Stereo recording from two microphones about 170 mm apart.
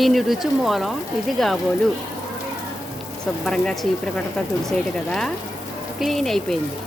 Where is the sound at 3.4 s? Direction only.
5° left (ahead or behind).